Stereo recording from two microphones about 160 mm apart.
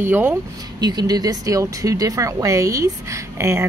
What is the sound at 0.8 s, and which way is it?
A woman's voice, 25° right (ahead or behind).